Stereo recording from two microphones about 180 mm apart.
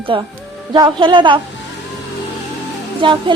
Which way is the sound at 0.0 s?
30° right (ahead or behind).